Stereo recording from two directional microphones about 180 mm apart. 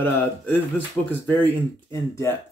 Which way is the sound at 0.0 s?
10° left (ahead or behind).